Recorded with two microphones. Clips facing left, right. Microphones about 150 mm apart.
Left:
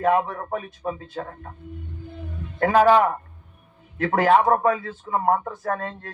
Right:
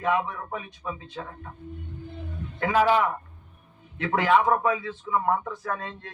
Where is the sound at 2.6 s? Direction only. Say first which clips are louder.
Left 5 dB; 50° left (ahead or behind).